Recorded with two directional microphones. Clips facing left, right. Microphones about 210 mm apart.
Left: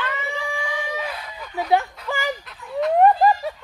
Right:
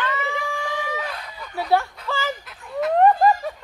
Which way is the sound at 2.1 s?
15° left (ahead or behind).